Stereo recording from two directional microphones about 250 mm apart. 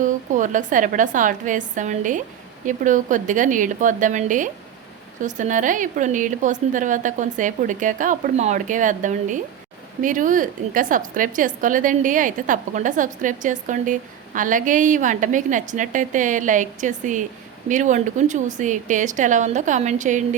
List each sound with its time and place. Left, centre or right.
0.0 s a woman's voice: right